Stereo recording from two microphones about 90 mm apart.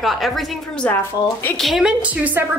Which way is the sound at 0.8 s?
15° left (ahead or behind).